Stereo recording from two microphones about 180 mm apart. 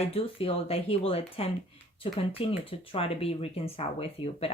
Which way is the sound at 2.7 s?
30° left (ahead or behind).